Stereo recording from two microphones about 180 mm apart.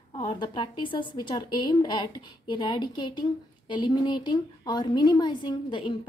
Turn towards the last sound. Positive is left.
turn(degrees=25)  # may be behind; listen again after turning